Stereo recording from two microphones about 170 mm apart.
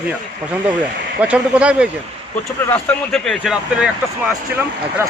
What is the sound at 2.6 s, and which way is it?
Speech, 10° left (ahead or behind).